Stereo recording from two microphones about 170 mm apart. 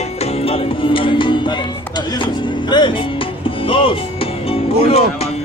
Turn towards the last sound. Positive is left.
turn(degrees=35)  # may be behind; listen again after turning